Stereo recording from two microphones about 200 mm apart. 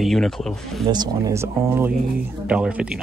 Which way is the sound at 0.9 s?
20° right (ahead or behind).